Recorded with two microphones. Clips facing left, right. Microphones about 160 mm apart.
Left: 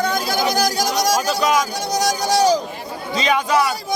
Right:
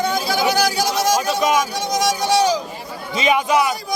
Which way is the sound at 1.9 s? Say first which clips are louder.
Right 1 dB; 35° left (ahead or behind).